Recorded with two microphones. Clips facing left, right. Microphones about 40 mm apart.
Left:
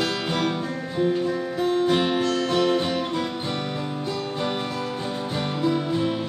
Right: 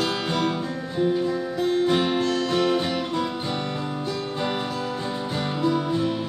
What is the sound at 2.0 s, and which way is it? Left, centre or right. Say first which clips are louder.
Music: even; centre.